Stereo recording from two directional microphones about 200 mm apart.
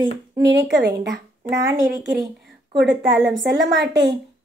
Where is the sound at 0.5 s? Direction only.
55° right (ahead or behind).